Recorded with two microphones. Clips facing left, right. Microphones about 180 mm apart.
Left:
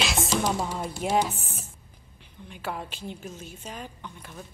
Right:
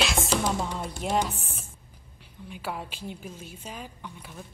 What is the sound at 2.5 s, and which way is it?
A woman's voice, 5° right (ahead or behind).